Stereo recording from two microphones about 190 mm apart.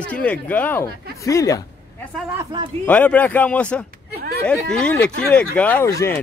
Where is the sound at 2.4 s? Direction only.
25° right (ahead or behind).